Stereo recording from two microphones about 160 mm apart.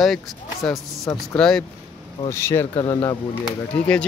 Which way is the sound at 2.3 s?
15° left (ahead or behind).